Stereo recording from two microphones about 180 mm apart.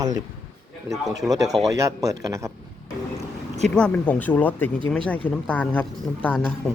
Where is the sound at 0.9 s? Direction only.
20° right (ahead or behind).